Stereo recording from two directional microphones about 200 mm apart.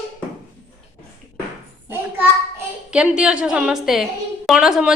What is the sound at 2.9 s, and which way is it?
A woman's voice, 5° right (ahead or behind).